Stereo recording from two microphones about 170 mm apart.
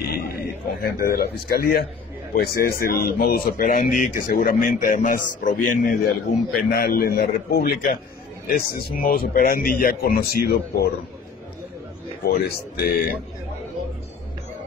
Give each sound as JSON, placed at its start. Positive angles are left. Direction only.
{"t": 0.1, "sound": "a man's voice", "side_deg": 65}
{"t": 6.7, "sound": "speech", "side_deg": 65}
{"t": 12.3, "sound": "speech", "side_deg": 65}